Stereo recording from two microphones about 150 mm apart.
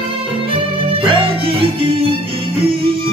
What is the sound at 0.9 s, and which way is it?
Music, 35° right (ahead or behind).